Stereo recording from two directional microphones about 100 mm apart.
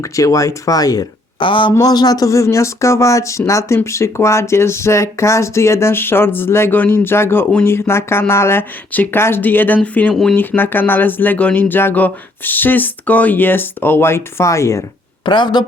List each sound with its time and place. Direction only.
0.0 s speech: 35° left (ahead or behind)
1.4 s speech: 55° left (ahead or behind)
1.8 s speech: 40° left (ahead or behind)
15.2 s speech: 50° left (ahead or behind)